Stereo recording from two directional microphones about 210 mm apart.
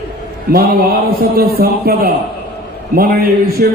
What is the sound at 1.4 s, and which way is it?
A man's voice, 45° right (ahead or behind).